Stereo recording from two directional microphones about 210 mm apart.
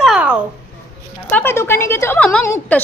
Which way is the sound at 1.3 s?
10° left (ahead or behind).